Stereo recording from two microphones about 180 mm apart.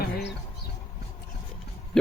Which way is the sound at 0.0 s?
70° left (ahead or behind).